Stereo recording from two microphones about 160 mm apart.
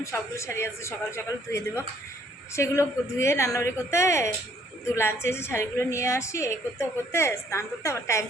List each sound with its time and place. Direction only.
0.0 s a woman's voice: 20° left (ahead or behind)